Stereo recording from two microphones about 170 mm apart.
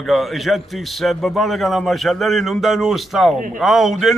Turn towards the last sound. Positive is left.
turn(degrees=0)  # may be behind; listen again after turning